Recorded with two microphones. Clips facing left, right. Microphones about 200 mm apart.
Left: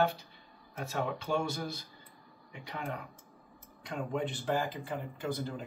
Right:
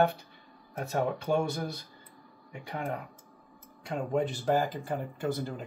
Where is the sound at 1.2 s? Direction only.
55° right (ahead or behind).